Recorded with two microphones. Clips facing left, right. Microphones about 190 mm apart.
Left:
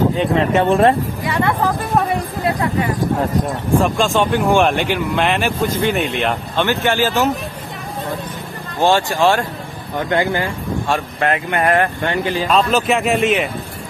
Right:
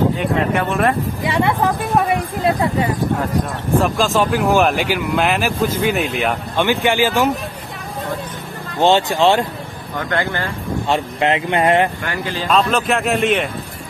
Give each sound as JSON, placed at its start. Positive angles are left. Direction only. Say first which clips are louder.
{"t": 0.2, "sound": "speech", "louder": "left 3 dB", "side_deg": 25}
{"t": 1.2, "sound": "a woman's voice", "louder": "right 2 dB", "side_deg": -10}
{"t": 3.8, "sound": "speech", "louder": "right 1 dB", "side_deg": 0}
{"t": 8.8, "sound": "speech", "louder": "right 1 dB", "side_deg": -20}
{"t": 9.9, "sound": "speech", "louder": "left 4 dB", "side_deg": 15}
{"t": 10.9, "sound": "speech", "louder": "right 2 dB", "side_deg": -20}
{"t": 12.0, "sound": "speech", "louder": "left 5 dB", "side_deg": 25}
{"t": 12.4, "sound": "speech", "louder": "right 1 dB", "side_deg": 0}